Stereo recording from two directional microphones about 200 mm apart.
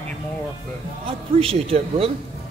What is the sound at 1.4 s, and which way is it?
Speech, 30° right (ahead or behind).